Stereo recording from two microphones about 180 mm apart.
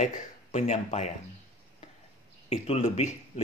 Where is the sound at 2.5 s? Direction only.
35° left (ahead or behind).